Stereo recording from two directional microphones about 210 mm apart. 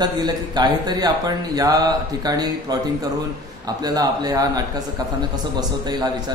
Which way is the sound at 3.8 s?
20° right (ahead or behind).